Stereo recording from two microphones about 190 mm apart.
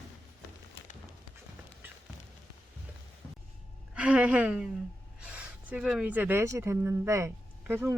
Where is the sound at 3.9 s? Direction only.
5° right (ahead or behind).